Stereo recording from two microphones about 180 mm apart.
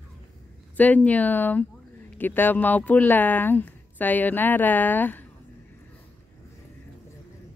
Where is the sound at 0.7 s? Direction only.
10° left (ahead or behind).